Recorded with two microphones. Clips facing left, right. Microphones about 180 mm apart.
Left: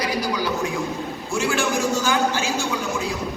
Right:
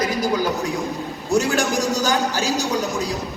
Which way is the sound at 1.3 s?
40° right (ahead or behind).